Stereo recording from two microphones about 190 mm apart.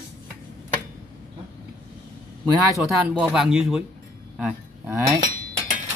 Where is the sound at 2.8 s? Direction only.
5° right (ahead or behind).